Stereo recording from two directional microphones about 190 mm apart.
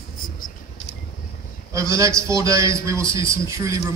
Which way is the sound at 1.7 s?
15° right (ahead or behind).